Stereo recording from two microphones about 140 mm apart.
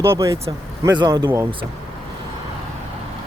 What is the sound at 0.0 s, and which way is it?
A man's voice, 20° right (ahead or behind).